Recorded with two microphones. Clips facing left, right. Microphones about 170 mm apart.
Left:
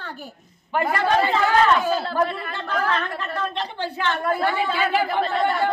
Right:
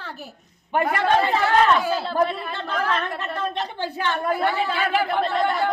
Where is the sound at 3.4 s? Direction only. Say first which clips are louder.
Even; 15° right (ahead or behind).